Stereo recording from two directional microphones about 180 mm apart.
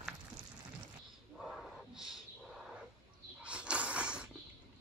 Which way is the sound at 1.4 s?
Centre (ahead or behind).